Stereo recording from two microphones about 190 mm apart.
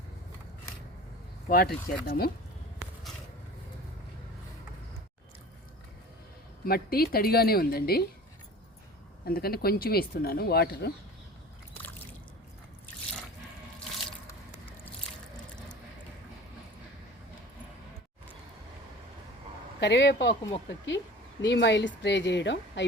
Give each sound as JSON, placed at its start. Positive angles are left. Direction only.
{"t": 1.5, "sound": "speech", "side_deg": 55}
{"t": 6.7, "sound": "speech", "side_deg": 50}
{"t": 9.2, "sound": "speech", "side_deg": 55}
{"t": 19.8, "sound": "speech", "side_deg": 65}